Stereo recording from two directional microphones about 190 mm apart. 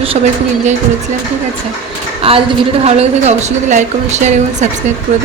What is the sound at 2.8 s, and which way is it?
A woman's voice, 35° right (ahead or behind).